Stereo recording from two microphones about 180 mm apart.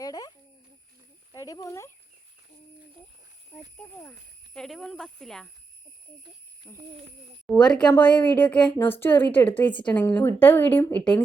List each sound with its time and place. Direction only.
0.0 s speech: 20° left (ahead or behind)
4.5 s speech: 5° left (ahead or behind)
6.7 s a woman's voice: 10° left (ahead or behind)